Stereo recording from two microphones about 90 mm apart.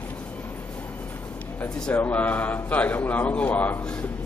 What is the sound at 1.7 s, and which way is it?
Speech, 10° left (ahead or behind).